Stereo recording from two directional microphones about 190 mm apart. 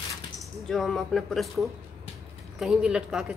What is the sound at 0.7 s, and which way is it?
Speech, centre (ahead or behind).